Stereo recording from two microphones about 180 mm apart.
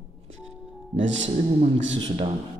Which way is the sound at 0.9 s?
90° right.